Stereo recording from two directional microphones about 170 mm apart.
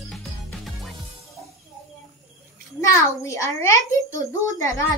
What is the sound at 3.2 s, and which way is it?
A child's voice, 20° left (ahead or behind).